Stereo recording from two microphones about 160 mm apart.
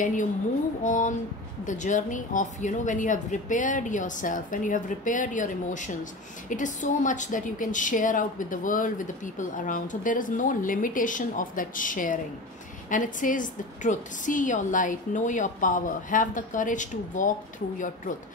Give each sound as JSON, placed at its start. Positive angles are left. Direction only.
{"t": 0.0, "sound": "a woman's voice", "side_deg": 55}